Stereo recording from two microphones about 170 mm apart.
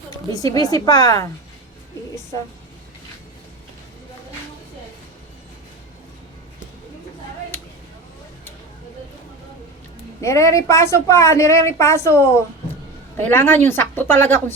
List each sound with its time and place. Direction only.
0.3 s a woman's voice: 20° left (ahead or behind)
10.2 s a woman's voice: 20° left (ahead or behind)